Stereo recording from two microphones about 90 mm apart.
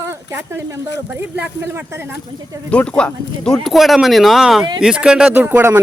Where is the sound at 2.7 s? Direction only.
10° left (ahead or behind); by 5.3 s 10° right (ahead or behind).